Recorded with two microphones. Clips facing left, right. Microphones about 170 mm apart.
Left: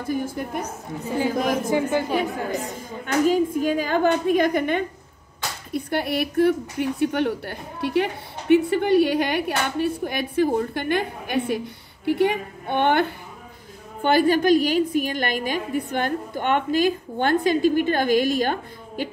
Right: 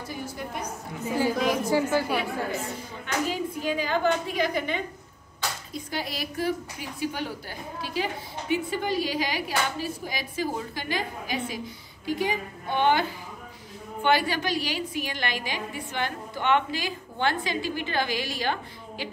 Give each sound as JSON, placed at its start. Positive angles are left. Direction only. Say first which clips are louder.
{"t": 0.0, "sound": "a woman's voice", "louder": "left 9 dB", "side_deg": 50}
{"t": 1.7, "sound": "a woman's voice", "louder": "left 2 dB", "side_deg": 25}
{"t": 3.3, "sound": "a woman's voice", "louder": "left 9 dB", "side_deg": 45}
{"t": 14.0, "sound": "a woman's voice", "louder": "left 7 dB", "side_deg": 45}